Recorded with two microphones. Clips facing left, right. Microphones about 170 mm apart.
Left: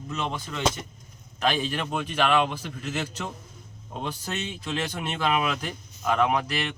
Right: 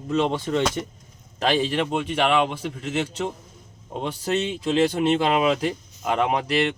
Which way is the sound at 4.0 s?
30° right (ahead or behind).